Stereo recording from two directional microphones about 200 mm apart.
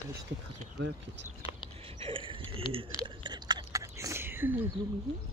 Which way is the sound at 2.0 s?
25° right (ahead or behind).